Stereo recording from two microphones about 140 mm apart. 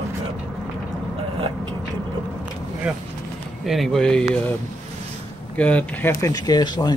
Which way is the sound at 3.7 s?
Centre (ahead or behind).